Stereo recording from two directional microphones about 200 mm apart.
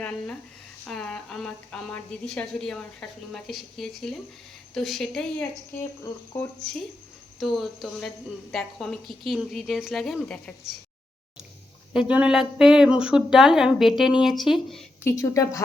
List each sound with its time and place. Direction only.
0.9 s a woman's voice: 5° left (ahead or behind)
11.9 s a woman's voice: 5° right (ahead or behind)
15.0 s speech: 15° left (ahead or behind)